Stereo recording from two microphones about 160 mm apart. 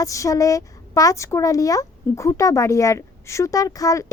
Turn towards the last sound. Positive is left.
turn(degrees=20)  # may be behind; listen again after turning